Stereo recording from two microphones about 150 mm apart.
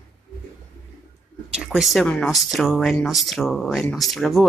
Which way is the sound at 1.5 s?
5° right (ahead or behind).